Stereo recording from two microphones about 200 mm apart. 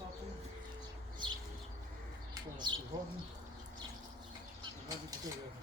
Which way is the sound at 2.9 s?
20° right (ahead or behind).